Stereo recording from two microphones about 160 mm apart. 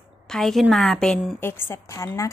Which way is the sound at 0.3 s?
Centre (ahead or behind).